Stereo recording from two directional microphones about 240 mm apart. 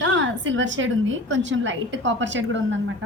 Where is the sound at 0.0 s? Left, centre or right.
Right.